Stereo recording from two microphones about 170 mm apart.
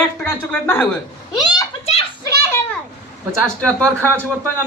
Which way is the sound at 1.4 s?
25° left (ahead or behind).